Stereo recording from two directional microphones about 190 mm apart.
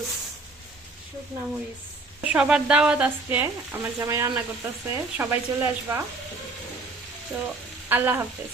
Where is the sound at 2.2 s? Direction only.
5° right (ahead or behind).